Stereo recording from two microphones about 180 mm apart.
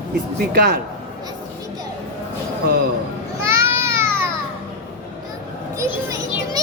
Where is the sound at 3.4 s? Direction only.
15° right (ahead or behind).